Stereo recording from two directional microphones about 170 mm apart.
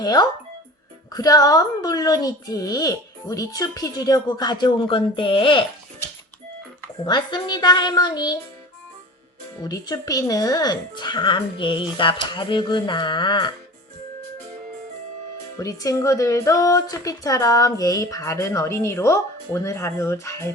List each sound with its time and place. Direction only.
0.0 s speech: 25° left (ahead or behind)
7.0 s speech: 25° left (ahead or behind)
9.6 s speech: 20° left (ahead or behind)
15.5 s speech: 20° left (ahead or behind)